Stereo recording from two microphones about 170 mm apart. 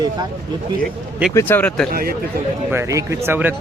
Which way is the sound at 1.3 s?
10° left (ahead or behind).